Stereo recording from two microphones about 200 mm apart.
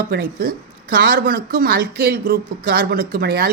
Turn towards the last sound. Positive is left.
turn(degrees=-50)  # may be behind; listen again after turning